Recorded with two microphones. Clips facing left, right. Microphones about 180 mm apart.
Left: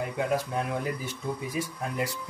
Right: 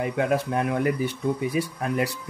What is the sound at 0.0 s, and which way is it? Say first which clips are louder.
Speech: right 4 dB; 65° right (ahead or behind).